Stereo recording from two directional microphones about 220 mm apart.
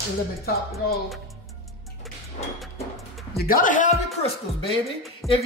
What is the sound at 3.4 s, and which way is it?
Speech, 40° left (ahead or behind).